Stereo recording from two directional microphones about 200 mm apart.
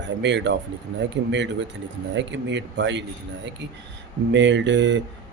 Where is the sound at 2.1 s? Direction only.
65° right (ahead or behind).